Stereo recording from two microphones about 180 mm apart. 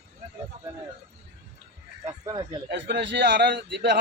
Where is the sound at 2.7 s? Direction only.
75° right (ahead or behind).